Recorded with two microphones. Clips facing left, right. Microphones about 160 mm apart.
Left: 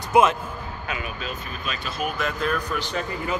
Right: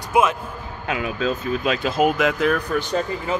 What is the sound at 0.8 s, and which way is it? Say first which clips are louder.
Speech: right 10 dB; 90° right.